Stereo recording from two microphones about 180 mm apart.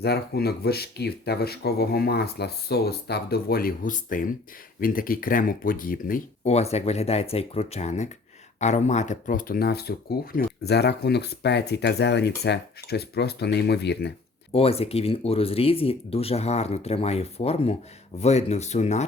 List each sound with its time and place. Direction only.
0.0 s speech: 60° left (ahead or behind)
14.5 s speech: 35° left (ahead or behind)